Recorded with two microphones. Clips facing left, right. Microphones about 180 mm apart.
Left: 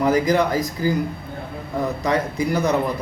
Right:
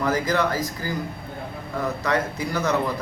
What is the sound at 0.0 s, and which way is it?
Speech, 15° left (ahead or behind).